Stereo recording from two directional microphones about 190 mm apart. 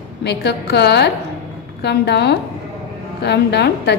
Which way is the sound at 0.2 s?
60° left (ahead or behind).